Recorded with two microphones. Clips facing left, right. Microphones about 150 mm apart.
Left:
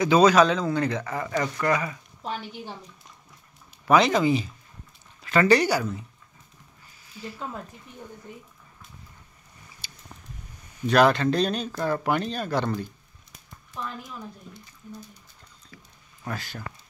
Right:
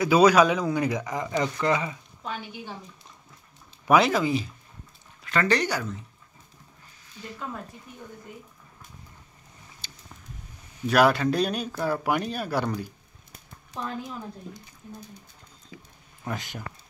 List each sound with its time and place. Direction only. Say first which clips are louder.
0.0 s speech: even; 10° right (ahead or behind)
3.8 s speech: left 1 dB; 5° right (ahead or behind); by 5.9 s 10° left (ahead or behind)
9.8 s a sound: right 1 dB; 10° left (ahead or behind)
10.9 s speech: left 1 dB; 10° right (ahead or behind)
13.8 s speech: right 1 dB; 25° right (ahead or behind)
15.7 s a sound: right 5 dB; 15° right (ahead or behind)
16.3 s speech: right 1 dB; 15° right (ahead or behind)